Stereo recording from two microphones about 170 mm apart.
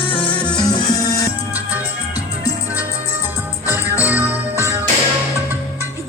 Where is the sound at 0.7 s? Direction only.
25° left (ahead or behind).